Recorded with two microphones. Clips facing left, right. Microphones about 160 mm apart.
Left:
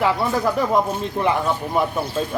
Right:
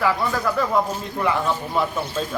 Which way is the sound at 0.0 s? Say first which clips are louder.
Left 2 dB; 20° left (ahead or behind).